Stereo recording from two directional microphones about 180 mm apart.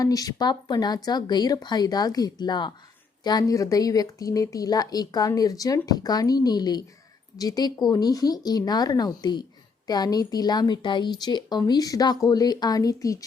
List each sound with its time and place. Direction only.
0.0 s speech: 20° left (ahead or behind)